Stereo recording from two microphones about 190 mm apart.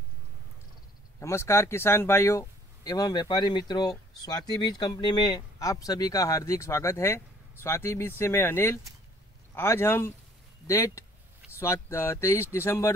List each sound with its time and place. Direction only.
1.2 s speech: 15° left (ahead or behind)